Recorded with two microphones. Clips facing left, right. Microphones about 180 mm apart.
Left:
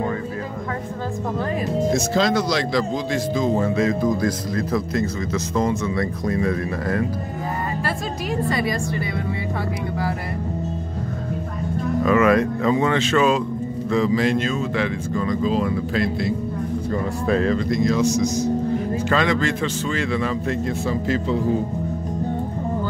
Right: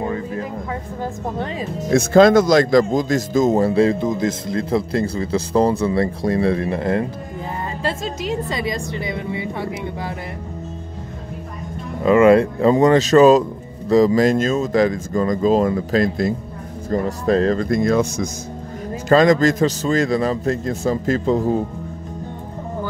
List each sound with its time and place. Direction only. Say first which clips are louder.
1.9 s a man's voice: right 10 dB; 55° right (ahead or behind); by 9.4 s 20° right (ahead or behind)
12.0 s speech: right 5 dB; 25° right (ahead or behind)
12.7 s a man's voice: right 8 dB; 40° right (ahead or behind)
19.0 s a man's voice: right 9 dB; 40° right (ahead or behind)